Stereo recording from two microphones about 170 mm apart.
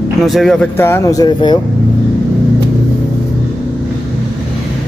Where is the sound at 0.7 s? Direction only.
15° left (ahead or behind).